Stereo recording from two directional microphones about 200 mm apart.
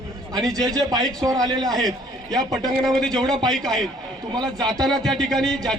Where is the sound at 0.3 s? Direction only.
20° right (ahead or behind).